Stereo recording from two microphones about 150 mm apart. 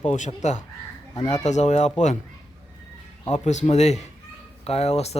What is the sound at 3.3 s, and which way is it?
Speech, 50° left (ahead or behind).